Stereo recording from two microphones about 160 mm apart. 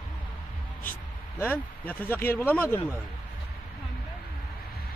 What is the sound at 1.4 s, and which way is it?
A man's voice, 10° left (ahead or behind).